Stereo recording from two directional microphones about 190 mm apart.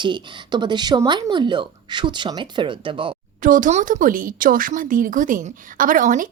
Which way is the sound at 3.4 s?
45° right (ahead or behind).